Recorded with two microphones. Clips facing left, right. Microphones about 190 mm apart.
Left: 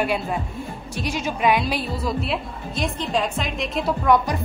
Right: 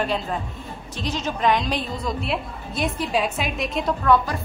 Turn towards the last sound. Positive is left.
turn(degrees=15)  # may be behind; listen again after turning